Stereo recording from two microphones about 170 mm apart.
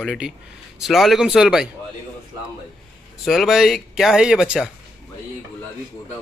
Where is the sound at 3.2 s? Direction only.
Centre (ahead or behind).